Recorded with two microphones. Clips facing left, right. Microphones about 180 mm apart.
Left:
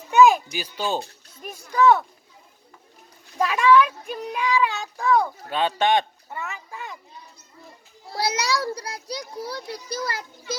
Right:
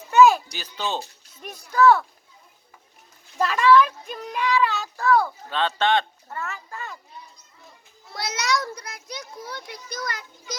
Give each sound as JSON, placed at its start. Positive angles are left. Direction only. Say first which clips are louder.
{"t": 0.1, "sound": "a sound", "louder": "even", "side_deg": 15}
{"t": 0.5, "sound": "speech", "louder": "left 3 dB", "side_deg": 10}
{"t": 3.3, "sound": "speech", "louder": "even", "side_deg": 10}
{"t": 8.1, "sound": "a child's voice", "louder": "left 2 dB", "side_deg": 30}